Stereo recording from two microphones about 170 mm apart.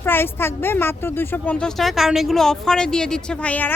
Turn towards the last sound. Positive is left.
turn(degrees=10)  # may be behind; listen again after turning